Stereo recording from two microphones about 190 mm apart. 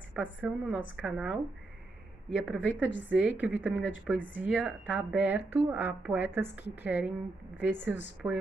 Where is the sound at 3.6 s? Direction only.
5° right (ahead or behind).